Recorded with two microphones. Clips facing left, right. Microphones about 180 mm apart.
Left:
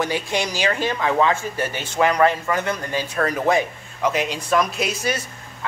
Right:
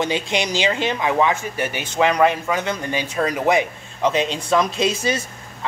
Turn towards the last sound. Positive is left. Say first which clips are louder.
# right 3 dB
turn(degrees=-25)  # may be behind; listen again after turning